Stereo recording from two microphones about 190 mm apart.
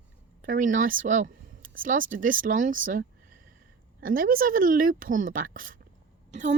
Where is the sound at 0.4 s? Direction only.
45° right (ahead or behind).